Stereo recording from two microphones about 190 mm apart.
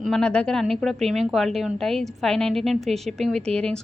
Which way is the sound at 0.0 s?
5° left (ahead or behind).